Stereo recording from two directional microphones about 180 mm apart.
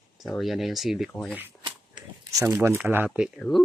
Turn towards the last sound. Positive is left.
turn(degrees=0)  # may be behind; listen again after turning